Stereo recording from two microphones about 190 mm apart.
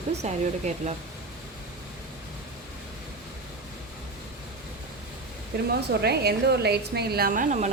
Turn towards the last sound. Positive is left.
turn(degrees=-45)  # may be behind; listen again after turning